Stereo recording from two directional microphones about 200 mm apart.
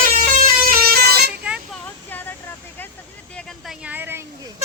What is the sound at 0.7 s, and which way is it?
Vehicle, 50° right (ahead or behind).